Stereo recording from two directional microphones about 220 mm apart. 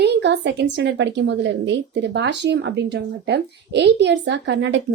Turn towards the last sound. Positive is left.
turn(degrees=-55)  # may be behind; listen again after turning